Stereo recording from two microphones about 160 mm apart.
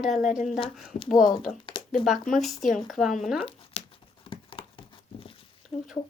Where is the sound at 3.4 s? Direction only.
35° left (ahead or behind).